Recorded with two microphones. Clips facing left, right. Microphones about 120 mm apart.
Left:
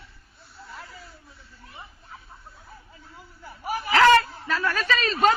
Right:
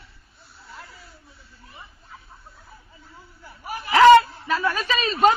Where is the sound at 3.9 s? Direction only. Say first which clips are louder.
Right 5 dB; 15° right (ahead or behind).